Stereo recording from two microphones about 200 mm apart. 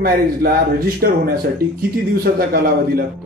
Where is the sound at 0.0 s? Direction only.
50° right (ahead or behind).